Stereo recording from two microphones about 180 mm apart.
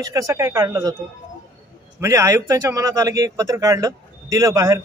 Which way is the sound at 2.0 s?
15° right (ahead or behind).